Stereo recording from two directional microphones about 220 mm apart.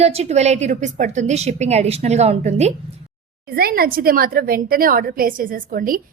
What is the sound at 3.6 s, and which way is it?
A woman's voice, 45° right (ahead or behind).